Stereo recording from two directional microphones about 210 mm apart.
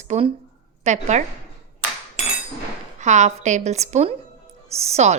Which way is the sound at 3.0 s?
35° right (ahead or behind).